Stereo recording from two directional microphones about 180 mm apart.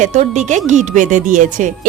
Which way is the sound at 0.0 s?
40° right (ahead or behind).